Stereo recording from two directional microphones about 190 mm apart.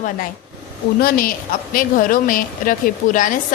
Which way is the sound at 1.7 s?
45° left (ahead or behind).